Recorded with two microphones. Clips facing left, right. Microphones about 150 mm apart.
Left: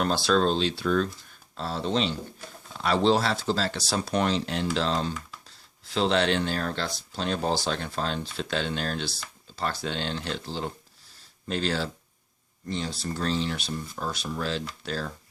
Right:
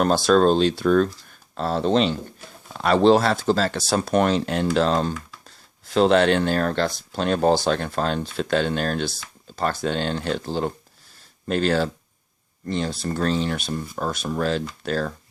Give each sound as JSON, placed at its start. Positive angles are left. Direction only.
{"t": 0.0, "sound": "speech", "side_deg": -45}